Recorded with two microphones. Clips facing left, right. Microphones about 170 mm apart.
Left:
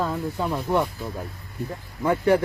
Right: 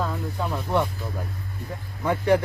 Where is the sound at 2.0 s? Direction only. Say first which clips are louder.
Left 1 dB; 5° left (ahead or behind).